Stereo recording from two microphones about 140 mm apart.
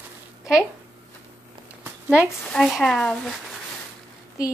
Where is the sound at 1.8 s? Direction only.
10° right (ahead or behind).